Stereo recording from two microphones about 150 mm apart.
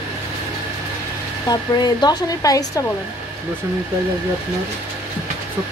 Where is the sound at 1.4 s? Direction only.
25° left (ahead or behind).